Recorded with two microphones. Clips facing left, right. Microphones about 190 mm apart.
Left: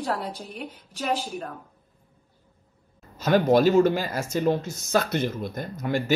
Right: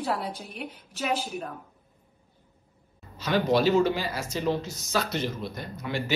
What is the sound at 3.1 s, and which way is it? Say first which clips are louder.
Speech: left 5 dB; 45° left (ahead or behind).